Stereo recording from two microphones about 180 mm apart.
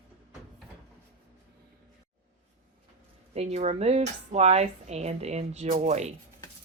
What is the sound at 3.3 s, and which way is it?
Speech, 40° right (ahead or behind).